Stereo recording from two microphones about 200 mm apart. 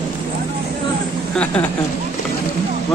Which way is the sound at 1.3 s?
5° left (ahead or behind).